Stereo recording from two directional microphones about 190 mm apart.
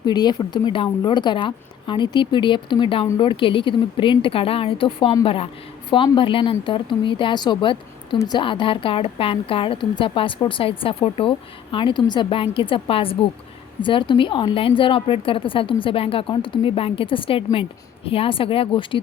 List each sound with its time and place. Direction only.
0.0 s speech: 20° left (ahead or behind)